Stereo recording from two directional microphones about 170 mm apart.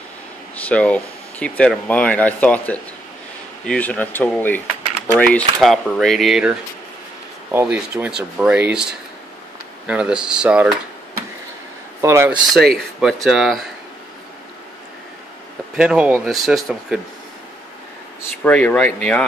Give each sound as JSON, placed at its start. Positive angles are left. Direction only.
{"t": 0.6, "sound": "speech", "side_deg": 10}
{"t": 7.5, "sound": "speech", "side_deg": -10}
{"t": 9.8, "sound": "speech", "side_deg": -5}
{"t": 12.0, "sound": "speech", "side_deg": -15}
{"t": 13.0, "sound": "speech", "side_deg": 0}
{"t": 15.7, "sound": "speech", "side_deg": -5}
{"t": 18.4, "sound": "speech", "side_deg": 10}